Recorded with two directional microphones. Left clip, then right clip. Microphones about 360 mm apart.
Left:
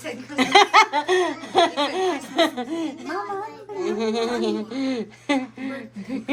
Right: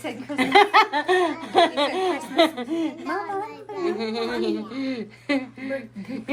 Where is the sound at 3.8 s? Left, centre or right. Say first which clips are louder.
Left 2 dB; centre.